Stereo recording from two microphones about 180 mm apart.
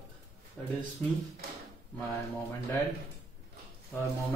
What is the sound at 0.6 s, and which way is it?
Speech, 5° left (ahead or behind).